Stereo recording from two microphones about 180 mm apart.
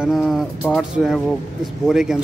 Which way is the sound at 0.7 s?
5° left (ahead or behind).